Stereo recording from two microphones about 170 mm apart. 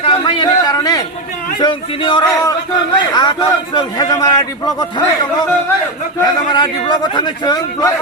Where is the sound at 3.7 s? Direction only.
25° left (ahead or behind).